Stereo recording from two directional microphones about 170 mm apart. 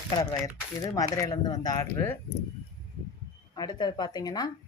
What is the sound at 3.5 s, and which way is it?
Speech, 25° left (ahead or behind).